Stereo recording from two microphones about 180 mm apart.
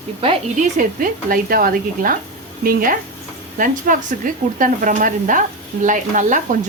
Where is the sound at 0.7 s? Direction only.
50° right (ahead or behind).